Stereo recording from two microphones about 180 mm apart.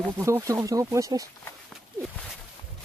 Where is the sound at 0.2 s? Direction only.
15° right (ahead or behind).